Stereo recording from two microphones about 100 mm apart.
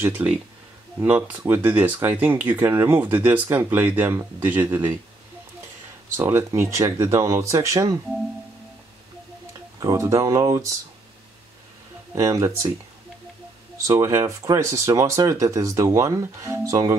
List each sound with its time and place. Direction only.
0.0 s speech: 15° right (ahead or behind)
6.1 s speech: 25° right (ahead or behind)
9.8 s speech: 30° right (ahead or behind)
12.2 s speech: 30° right (ahead or behind)
13.8 s speech: 35° right (ahead or behind)